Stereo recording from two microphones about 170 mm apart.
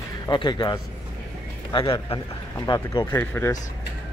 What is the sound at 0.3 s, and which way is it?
Speech, 25° left (ahead or behind).